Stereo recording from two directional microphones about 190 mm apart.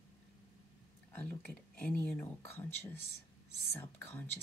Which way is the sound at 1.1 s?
10° left (ahead or behind).